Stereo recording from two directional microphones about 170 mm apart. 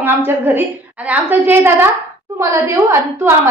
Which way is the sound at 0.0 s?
15° right (ahead or behind).